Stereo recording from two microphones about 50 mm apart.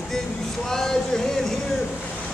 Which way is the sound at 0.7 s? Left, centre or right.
Centre.